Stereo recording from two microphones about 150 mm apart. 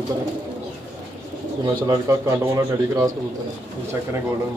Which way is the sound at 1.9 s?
25° right (ahead or behind).